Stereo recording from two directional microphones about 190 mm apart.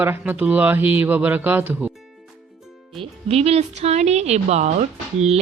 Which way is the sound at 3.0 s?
30° right (ahead or behind).